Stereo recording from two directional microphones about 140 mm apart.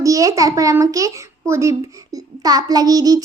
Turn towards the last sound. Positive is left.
turn(degrees=-25)  # may be behind; listen again after turning